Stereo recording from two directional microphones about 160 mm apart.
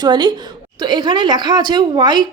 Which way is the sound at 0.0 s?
25° right (ahead or behind).